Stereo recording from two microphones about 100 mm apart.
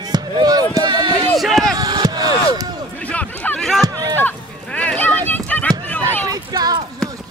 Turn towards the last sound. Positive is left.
turn(degrees=-40)  # may be behind; listen again after turning